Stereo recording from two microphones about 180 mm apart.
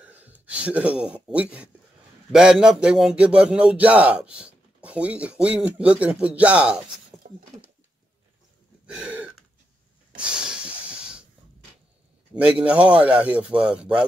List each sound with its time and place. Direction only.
0.0 s speech: 10° right (ahead or behind)
7.2 s a sound: 40° right (ahead or behind)
8.8 s throat clearing: 5° right (ahead or behind)
10.1 s snort: 5° right (ahead or behind)
12.4 s speech: 5° right (ahead or behind)